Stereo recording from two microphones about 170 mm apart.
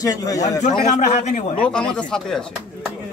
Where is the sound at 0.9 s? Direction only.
45° left (ahead or behind).